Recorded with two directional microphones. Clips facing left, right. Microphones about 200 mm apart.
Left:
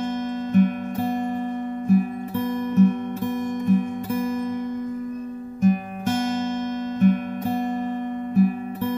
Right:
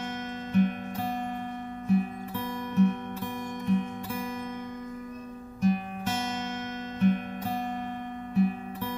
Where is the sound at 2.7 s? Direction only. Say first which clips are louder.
Left 5 dB; 45° left (ahead or behind).